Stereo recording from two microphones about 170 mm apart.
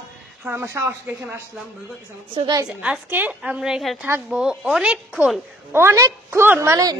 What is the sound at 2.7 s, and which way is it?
A woman's voice, 5° right (ahead or behind).